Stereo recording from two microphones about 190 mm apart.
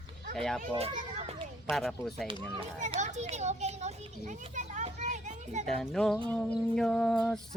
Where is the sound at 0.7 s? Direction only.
35° right (ahead or behind).